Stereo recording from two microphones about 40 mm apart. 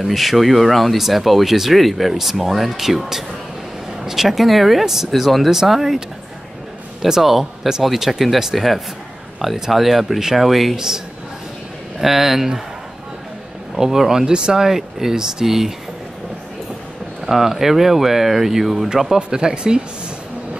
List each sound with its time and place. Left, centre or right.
0.1 s speech: centre
12.0 s speech: centre
13.7 s speech: centre
17.3 s speech: centre
19.1 s speech: right